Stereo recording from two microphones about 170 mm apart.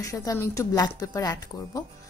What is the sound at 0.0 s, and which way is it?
A woman's voice, 20° left (ahead or behind).